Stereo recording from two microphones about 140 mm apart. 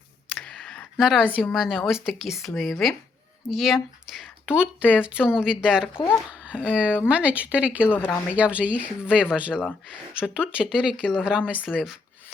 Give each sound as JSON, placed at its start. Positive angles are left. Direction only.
{"t": 0.3, "sound": "a sound", "side_deg": 5}
{"t": 1.5, "sound": "speech", "side_deg": 0}
{"t": 7.9, "sound": "speech", "side_deg": 15}
{"t": 8.4, "sound": "speech", "side_deg": -10}